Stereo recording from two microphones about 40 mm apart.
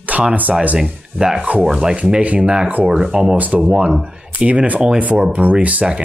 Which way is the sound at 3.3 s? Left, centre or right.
Right.